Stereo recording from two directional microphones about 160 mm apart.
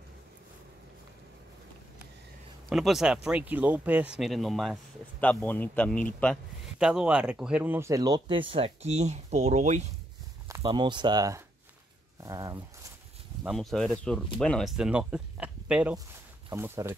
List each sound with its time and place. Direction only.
2.7 s a man's voice: centre (ahead or behind)
6.8 s speech: 5° right (ahead or behind); by 9.8 s 45° right (ahead or behind)
10.6 s speech: 30° right (ahead or behind)
13.5 s speech: centre (ahead or behind); by 16.9 s 15° right (ahead or behind)